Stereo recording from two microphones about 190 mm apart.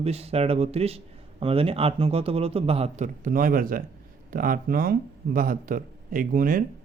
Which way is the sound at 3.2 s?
45° right (ahead or behind).